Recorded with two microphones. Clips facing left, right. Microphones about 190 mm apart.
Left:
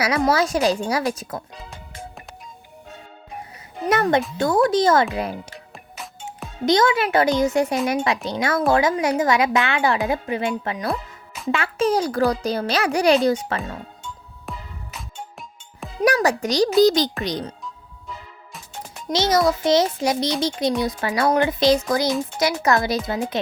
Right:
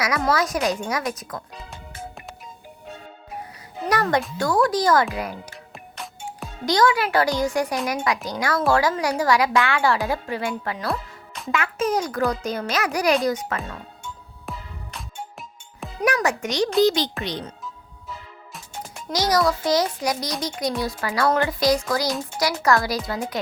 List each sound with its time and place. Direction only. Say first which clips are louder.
0.0 s a woman's voice: left 3 dB; 30° left (ahead or behind)
3.8 s a woman's voice: left 3 dB; 25° left (ahead or behind)
6.7 s a woman's voice: left 2 dB; 20° left (ahead or behind)
14.5 s music: even; centre (ahead or behind)
16.0 s a child's voice: left 3 dB; 35° left (ahead or behind)
19.1 s a woman's voice: left 2 dB; 25° left (ahead or behind)